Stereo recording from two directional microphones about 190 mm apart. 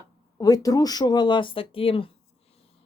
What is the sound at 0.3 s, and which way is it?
Speech, 20° left (ahead or behind).